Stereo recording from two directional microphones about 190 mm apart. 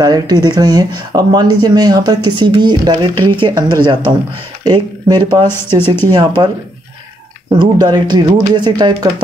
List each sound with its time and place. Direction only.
0.0 s speech: 20° right (ahead or behind)
5.5 s speech: 10° left (ahead or behind)
6.0 s speech: 25° right (ahead or behind)
7.6 s speech: 20° right (ahead or behind)